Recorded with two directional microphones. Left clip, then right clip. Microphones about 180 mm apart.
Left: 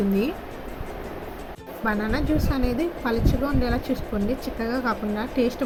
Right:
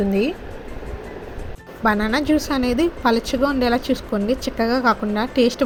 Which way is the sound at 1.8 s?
45° right (ahead or behind).